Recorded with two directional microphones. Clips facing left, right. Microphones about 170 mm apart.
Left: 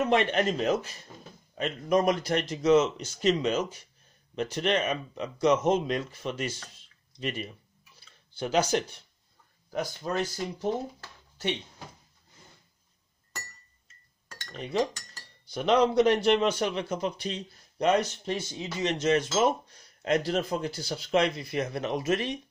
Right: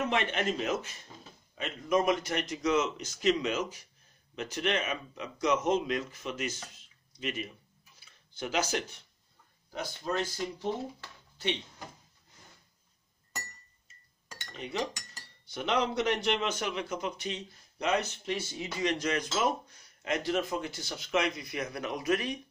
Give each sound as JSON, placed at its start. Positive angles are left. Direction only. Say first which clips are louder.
{"t": 0.1, "sound": "a man's voice", "louder": "left 6 dB", "side_deg": 40}
{"t": 9.7, "sound": "speech", "louder": "left 3 dB", "side_deg": 50}
{"t": 14.3, "sound": "cutlery", "louder": "left 3 dB", "side_deg": -10}
{"t": 15.5, "sound": "a man's voice", "louder": "left 7 dB", "side_deg": 35}
{"t": 18.3, "sound": "speech", "louder": "left 1 dB", "side_deg": 25}
{"t": 20.0, "sound": "a man's voice", "louder": "left 4 dB", "side_deg": 35}